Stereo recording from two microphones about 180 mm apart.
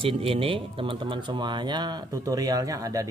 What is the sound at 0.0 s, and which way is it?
Speech, 30° right (ahead or behind).